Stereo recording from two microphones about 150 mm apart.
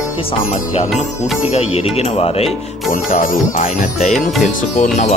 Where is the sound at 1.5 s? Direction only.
45° left (ahead or behind).